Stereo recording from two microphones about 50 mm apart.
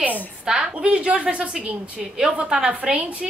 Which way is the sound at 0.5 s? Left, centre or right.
Centre.